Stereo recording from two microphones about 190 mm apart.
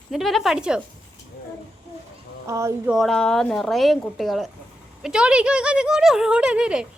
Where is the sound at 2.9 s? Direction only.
Centre (ahead or behind).